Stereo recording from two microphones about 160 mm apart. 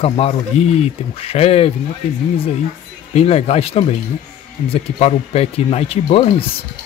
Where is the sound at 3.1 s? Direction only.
40° left (ahead or behind).